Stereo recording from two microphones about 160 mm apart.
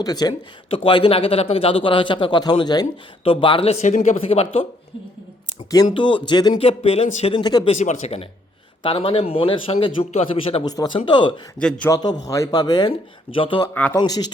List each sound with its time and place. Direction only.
0.0 s a man's voice: 25° left (ahead or behind)
5.7 s speech: 25° left (ahead or behind)
6.6 s a man's voice: 40° left (ahead or behind)
7.3 s speech: 30° left (ahead or behind)
7.7 s a man's voice: 45° left (ahead or behind); by 14.3 s 25° left (ahead or behind)